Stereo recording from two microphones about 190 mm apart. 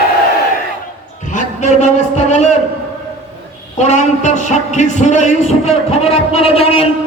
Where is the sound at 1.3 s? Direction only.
40° left (ahead or behind).